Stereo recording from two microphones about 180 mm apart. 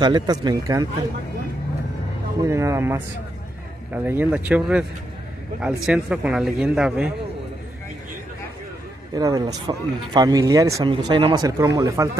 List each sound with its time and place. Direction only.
0.0 s speech: 25° right (ahead or behind)
2.4 s speech: 15° right (ahead or behind)
5.9 s speech: 5° right (ahead or behind)
9.1 s speech: 20° right (ahead or behind)